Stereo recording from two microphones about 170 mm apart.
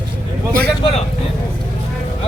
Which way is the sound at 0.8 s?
30° left (ahead or behind).